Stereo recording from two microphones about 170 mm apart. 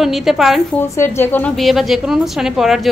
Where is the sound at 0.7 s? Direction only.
15° left (ahead or behind).